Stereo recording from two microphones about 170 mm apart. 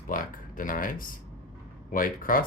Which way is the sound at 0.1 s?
55° left (ahead or behind).